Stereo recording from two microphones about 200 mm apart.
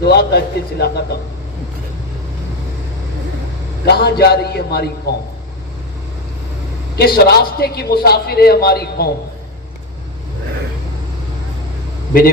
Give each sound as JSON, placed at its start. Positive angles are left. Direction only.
{"t": 0.0, "sound": "a man's voice", "side_deg": 55}
{"t": 3.8, "sound": "a man's voice", "side_deg": 55}
{"t": 6.9, "sound": "a man's voice", "side_deg": 50}
{"t": 12.1, "sound": "a man's voice", "side_deg": 45}